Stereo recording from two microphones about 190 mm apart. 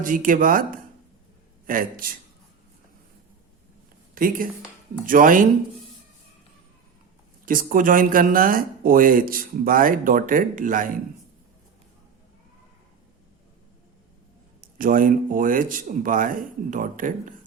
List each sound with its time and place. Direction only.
0.0 s speech: 45° right (ahead or behind)
4.1 s speech: 50° right (ahead or behind)
7.4 s speech: 50° right (ahead or behind)
14.8 s speech: 45° right (ahead or behind)